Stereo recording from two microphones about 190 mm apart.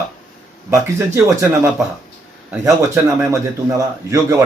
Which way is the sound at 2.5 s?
10° right (ahead or behind).